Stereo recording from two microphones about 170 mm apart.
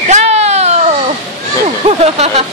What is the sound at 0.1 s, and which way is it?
Baby cry, 40° right (ahead or behind).